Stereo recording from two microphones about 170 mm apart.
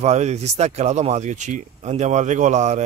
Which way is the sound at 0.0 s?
40° right (ahead or behind).